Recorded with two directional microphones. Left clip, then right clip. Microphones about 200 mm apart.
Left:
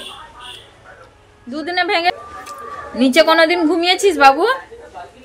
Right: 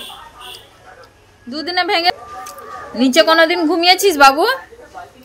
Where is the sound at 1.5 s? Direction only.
15° right (ahead or behind); by 4.6 s 30° right (ahead or behind).